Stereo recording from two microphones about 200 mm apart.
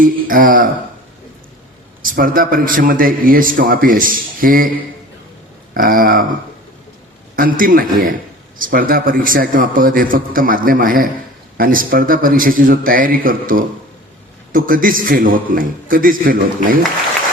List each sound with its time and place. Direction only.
0.0 s a man's voice: 45° right (ahead or behind)
2.0 s a man's voice: 45° right (ahead or behind)
5.7 s a man's voice: 45° right (ahead or behind)
7.3 s a man's voice: 45° right (ahead or behind)